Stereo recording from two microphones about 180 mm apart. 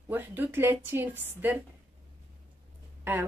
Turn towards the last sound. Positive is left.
turn(degrees=-10)  # may be behind; listen again after turning